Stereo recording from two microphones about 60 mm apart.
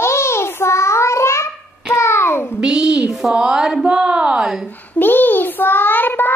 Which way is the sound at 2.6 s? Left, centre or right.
Centre.